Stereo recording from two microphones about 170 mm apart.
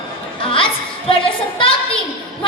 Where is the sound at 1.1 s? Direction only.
30° left (ahead or behind).